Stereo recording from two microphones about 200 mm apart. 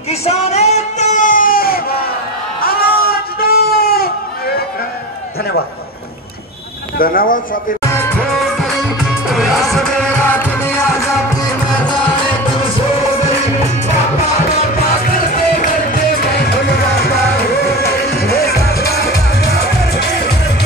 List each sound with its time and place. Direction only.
0.1 s a sound: 30° left (ahead or behind); by 4.1 s 50° left (ahead or behind)
7.0 s speech: 45° left (ahead or behind)
7.8 s music: 15° left (ahead or behind)
8.3 s music: centre (ahead or behind); by 12.0 s 15° left (ahead or behind)
17.7 s music: 50° left (ahead or behind)